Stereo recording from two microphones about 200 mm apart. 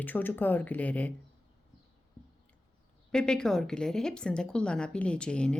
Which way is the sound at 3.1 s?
5° left (ahead or behind).